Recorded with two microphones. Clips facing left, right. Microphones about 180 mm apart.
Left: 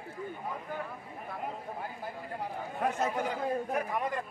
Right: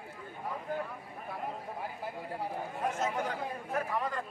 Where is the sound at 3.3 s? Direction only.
15° left (ahead or behind).